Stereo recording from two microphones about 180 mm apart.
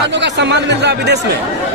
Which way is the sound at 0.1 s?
75° right (ahead or behind).